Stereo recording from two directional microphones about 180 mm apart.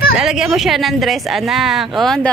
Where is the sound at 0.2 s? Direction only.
5° right (ahead or behind).